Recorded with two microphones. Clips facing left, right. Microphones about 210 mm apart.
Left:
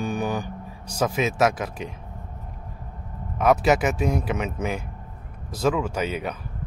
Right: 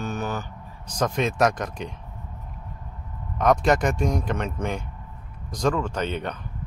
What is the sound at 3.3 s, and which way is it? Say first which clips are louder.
A man's voice: left 1 dB; 5° left (ahead or behind).